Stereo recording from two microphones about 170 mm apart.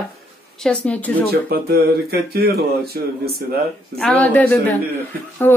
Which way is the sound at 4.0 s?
5° left (ahead or behind).